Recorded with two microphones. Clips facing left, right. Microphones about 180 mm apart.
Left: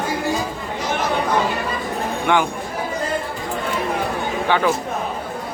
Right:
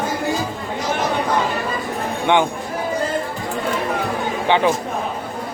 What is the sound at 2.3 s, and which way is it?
Speech, 20° right (ahead or behind).